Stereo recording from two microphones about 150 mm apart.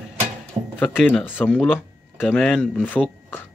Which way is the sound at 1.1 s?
15° left (ahead or behind).